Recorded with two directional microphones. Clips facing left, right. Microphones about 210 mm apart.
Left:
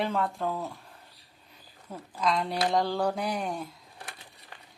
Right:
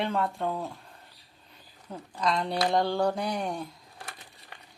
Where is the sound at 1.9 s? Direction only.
Centre (ahead or behind).